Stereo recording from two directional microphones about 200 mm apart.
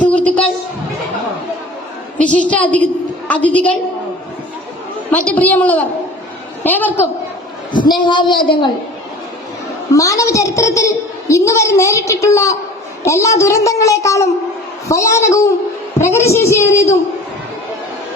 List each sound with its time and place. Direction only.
0.0 s a sound: 5° left (ahead or behind)
2.2 s a woman's voice: 5° left (ahead or behind)
5.1 s a woman's voice: 5° left (ahead or behind)
7.9 s speech: 25° left (ahead or behind)
9.9 s a woman's voice: 15° left (ahead or behind)